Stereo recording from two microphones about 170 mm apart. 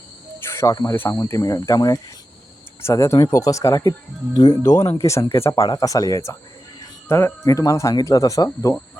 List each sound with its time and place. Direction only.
0.4 s speech: 15° left (ahead or behind)